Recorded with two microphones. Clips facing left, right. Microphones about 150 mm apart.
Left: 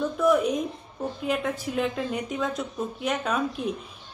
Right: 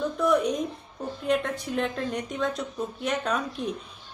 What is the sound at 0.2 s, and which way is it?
Speech, centre (ahead or behind).